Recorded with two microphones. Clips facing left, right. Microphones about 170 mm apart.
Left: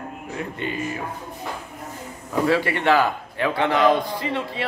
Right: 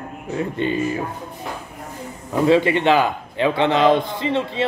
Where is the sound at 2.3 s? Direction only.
20° right (ahead or behind).